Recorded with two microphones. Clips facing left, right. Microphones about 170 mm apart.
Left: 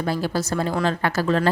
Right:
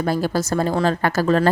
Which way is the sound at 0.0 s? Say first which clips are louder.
Right 3 dB; 45° right (ahead or behind).